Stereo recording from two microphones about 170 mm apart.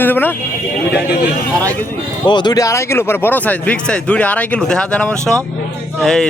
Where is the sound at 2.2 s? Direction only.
25° left (ahead or behind); by 6.3 s 5° left (ahead or behind).